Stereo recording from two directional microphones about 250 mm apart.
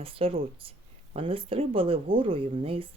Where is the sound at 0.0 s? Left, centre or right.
Right.